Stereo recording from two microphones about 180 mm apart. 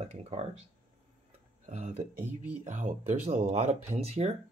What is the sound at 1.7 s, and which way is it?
Speech, 40° right (ahead or behind).